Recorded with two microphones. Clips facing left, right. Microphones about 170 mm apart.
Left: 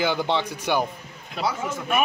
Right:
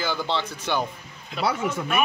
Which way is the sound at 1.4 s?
65° right (ahead or behind).